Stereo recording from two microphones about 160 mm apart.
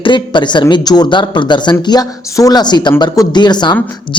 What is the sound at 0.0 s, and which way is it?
Speech, 30° left (ahead or behind).